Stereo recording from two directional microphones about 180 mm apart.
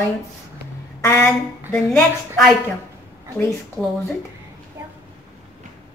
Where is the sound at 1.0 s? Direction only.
15° left (ahead or behind).